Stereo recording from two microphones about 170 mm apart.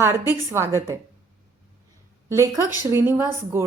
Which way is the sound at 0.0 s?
15° right (ahead or behind).